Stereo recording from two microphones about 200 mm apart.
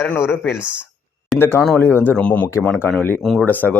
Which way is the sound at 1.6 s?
5° left (ahead or behind).